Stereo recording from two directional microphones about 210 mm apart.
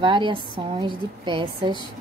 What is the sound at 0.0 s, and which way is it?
Speech, 25° right (ahead or behind).